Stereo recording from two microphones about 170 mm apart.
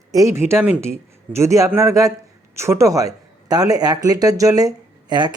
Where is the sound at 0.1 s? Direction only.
20° right (ahead or behind).